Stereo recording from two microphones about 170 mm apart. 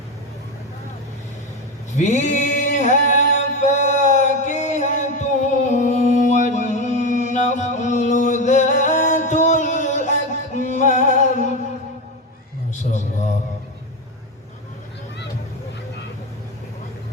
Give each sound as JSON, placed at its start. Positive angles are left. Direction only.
{"t": 2.0, "sound": "male singing", "side_deg": 45}